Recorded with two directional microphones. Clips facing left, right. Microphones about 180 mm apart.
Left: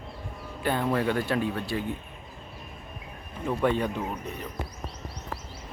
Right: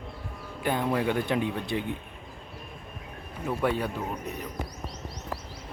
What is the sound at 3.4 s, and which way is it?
Speech, 5° right (ahead or behind).